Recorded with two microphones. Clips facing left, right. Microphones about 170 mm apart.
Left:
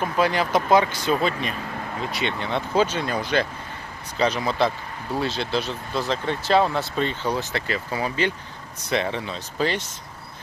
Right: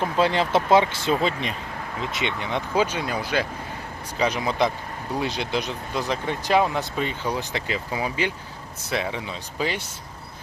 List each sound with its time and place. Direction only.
0.0 s speech: 25° right (ahead or behind); by 9.9 s 10° right (ahead or behind)